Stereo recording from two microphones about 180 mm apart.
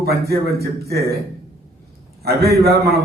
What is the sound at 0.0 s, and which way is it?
Speech, 60° right (ahead or behind).